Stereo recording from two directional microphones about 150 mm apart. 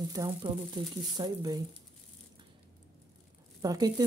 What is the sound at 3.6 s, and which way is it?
Speech, 25° right (ahead or behind).